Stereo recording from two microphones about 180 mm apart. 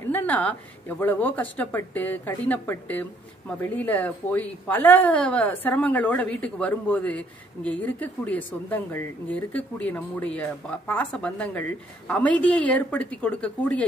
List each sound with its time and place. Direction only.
0.1 s a woman's voice: 10° left (ahead or behind)